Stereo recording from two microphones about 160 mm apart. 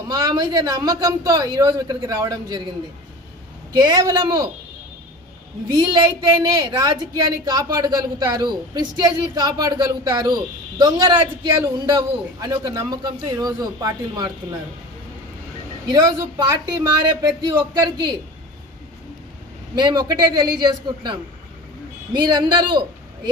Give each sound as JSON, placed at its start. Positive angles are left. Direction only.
{"t": 0.1, "sound": "speech", "side_deg": -25}
{"t": 3.8, "sound": "speech", "side_deg": -25}
{"t": 5.7, "sound": "speech", "side_deg": -25}
{"t": 15.9, "sound": "speech", "side_deg": -25}
{"t": 19.7, "sound": "a woman's voice", "side_deg": -25}